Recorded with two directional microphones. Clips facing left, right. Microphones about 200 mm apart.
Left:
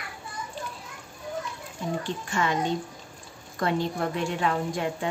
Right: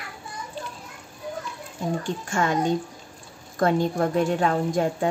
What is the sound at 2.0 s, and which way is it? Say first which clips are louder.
A woman's voice: right 2 dB; 45° right (ahead or behind).